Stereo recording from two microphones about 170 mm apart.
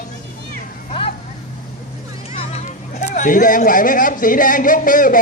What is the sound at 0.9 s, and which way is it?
Vehicle, 35° left (ahead or behind).